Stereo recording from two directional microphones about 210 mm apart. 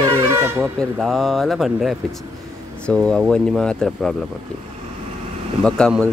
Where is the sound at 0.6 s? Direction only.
Centre (ahead or behind).